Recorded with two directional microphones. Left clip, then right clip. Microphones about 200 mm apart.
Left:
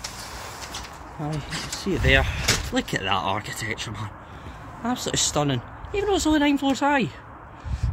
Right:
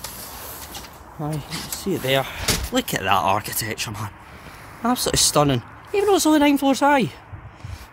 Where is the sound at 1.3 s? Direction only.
25° right (ahead or behind).